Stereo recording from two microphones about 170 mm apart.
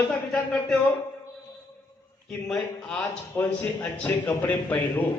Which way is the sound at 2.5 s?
5° left (ahead or behind).